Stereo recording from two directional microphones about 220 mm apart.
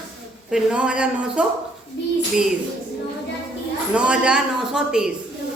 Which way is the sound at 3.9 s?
5° right (ahead or behind).